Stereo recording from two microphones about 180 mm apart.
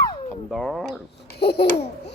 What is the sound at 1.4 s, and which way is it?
Speech, 65° left (ahead or behind).